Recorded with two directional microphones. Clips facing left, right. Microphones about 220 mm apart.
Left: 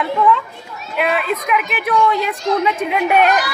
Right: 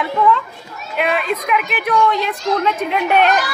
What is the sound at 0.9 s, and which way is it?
A woman's voice, centre (ahead or behind).